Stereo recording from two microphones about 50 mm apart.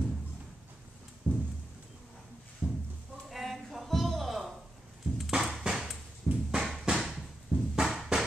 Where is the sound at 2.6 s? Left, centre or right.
Centre.